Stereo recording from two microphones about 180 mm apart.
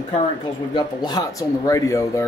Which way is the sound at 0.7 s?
25° left (ahead or behind).